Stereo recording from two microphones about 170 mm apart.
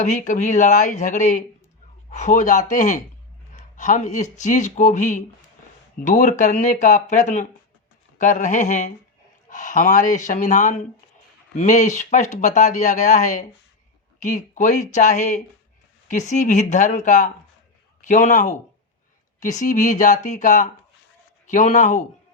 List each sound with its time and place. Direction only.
0.0 s speech: 45° left (ahead or behind)